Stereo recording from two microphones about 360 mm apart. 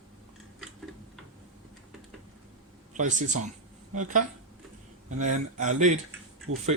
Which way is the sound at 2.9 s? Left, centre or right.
Right.